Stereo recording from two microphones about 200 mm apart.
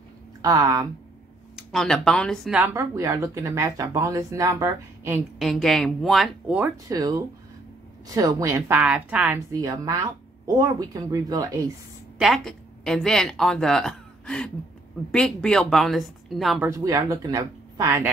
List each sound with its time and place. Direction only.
0.4 s speech: 20° right (ahead or behind)
1.6 s speech: centre (ahead or behind)
5.4 s speech: centre (ahead or behind)
6.9 s speech: 20° right (ahead or behind)
12.2 s speech: centre (ahead or behind)
16.6 s speech: 15° right (ahead or behind)